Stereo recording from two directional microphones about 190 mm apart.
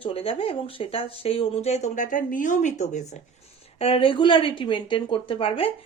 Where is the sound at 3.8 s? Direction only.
30° left (ahead or behind).